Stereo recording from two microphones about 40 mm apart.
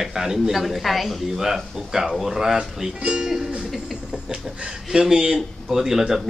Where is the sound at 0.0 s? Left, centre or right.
Centre.